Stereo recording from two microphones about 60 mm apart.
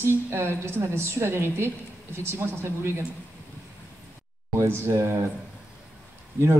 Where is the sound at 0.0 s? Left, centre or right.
Right.